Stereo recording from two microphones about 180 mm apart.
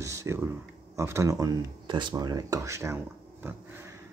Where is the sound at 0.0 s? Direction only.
15° right (ahead or behind).